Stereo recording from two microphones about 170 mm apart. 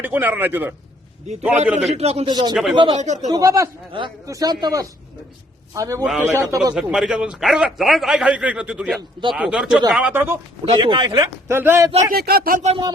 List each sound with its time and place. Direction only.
0.0 s speech: 10° right (ahead or behind)
2.0 s a man's voice: 35° right (ahead or behind)
2.3 s speech: 25° right (ahead or behind)
3.0 s speech: 45° right (ahead or behind)
3.2 s speech: 20° right (ahead or behind)
6.7 s a man's voice: 5° right (ahead or behind)
10.7 s speech: 30° right (ahead or behind); by 11.9 s 15° right (ahead or behind)
12.1 s speech: 65° right (ahead or behind)